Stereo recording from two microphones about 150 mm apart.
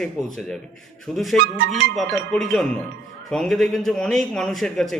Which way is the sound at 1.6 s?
90° right.